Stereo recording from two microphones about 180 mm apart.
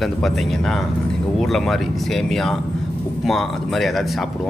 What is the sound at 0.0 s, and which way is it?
A man's voice, centre (ahead or behind).